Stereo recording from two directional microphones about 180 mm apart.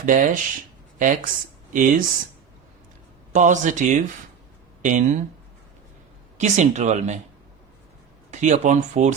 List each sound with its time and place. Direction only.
0.0 s speech: 50° right (ahead or behind)
3.3 s speech: 45° right (ahead or behind)
6.4 s speech: 40° right (ahead or behind)
8.3 s speech: 40° right (ahead or behind)